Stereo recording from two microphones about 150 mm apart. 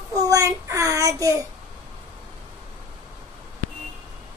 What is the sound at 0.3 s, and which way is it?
Speech, 20° right (ahead or behind).